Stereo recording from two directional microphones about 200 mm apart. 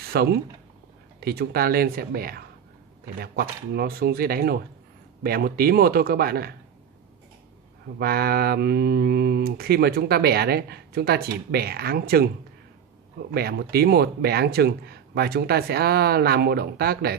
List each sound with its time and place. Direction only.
0.0 s speech: 50° right (ahead or behind)
8.0 s speech: 50° right (ahead or behind)
13.3 s speech: 50° right (ahead or behind)